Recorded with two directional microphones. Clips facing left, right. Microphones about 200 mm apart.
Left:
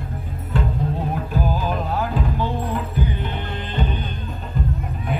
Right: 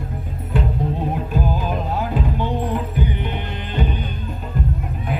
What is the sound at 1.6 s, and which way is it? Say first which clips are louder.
Music: even; 20° right (ahead or behind).